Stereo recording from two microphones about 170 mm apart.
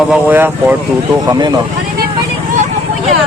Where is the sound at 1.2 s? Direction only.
20° right (ahead or behind).